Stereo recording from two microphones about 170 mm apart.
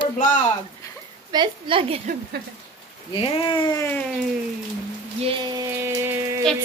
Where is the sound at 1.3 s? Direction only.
30° right (ahead or behind).